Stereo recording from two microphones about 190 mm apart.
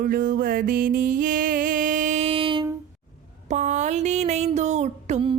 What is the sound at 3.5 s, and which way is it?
Music, 40° right (ahead or behind).